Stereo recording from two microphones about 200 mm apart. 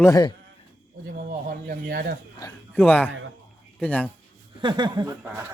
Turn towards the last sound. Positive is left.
turn(degrees=-20)  # may be behind; listen again after turning